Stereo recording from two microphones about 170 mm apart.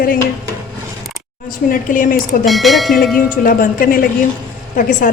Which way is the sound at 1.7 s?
50° left (ahead or behind).